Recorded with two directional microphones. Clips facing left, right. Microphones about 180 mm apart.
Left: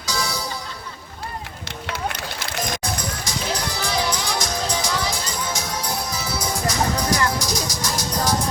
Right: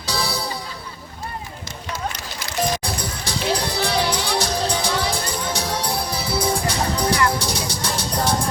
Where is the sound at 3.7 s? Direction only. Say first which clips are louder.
Right 3 dB; 30° right (ahead or behind).